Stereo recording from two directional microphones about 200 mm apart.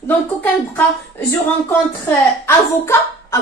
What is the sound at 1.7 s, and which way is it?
A woman's voice, 10° left (ahead or behind).